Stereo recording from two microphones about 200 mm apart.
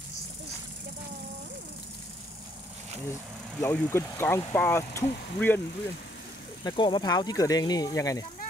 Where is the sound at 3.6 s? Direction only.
10° left (ahead or behind).